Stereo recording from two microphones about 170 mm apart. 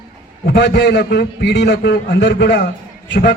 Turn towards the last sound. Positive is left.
turn(degrees=90)